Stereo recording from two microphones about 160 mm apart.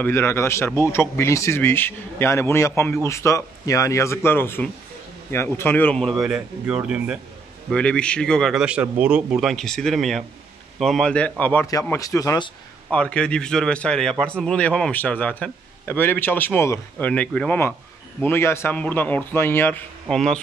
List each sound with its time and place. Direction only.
0.0 s a man's voice: 15° left (ahead or behind); by 7.2 s 5° right (ahead or behind)
7.7 s a man's voice: 5° left (ahead or behind)
12.9 s a man's voice: 5° left (ahead or behind)